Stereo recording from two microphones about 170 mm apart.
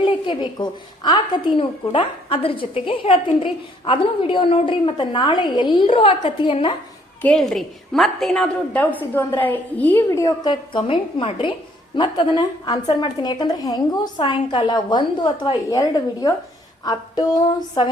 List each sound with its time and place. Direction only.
0.0 s a woman's voice: 30° left (ahead or behind)
7.2 s a woman's voice: 5° left (ahead or behind)
10.1 s a woman's voice: 20° left (ahead or behind)